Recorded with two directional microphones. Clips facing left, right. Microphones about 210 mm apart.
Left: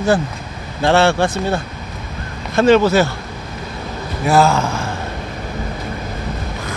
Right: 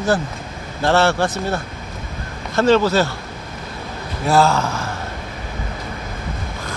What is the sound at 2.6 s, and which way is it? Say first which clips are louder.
Speech: left 3 dB; 15° left (ahead or behind).